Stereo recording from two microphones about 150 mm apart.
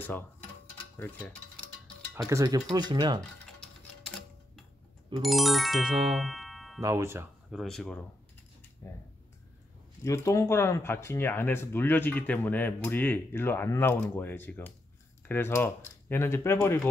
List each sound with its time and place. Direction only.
0.9 s mechanisms: 10° left (ahead or behind)
2.2 s speech: 20° right (ahead or behind)
5.2 s music: centre (ahead or behind)
6.8 s speech: 20° right (ahead or behind)
7.5 s music: centre (ahead or behind)
8.8 s speech: 15° left (ahead or behind)
10.0 s speech: 20° left (ahead or behind)